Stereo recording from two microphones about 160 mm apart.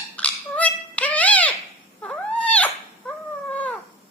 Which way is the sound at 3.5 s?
10° left (ahead or behind).